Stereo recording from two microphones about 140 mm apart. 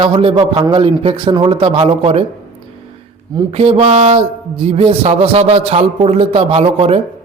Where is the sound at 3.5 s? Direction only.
45° right (ahead or behind).